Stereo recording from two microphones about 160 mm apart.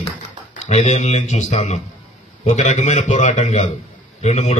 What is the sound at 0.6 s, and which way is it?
A man's voice, 45° left (ahead or behind).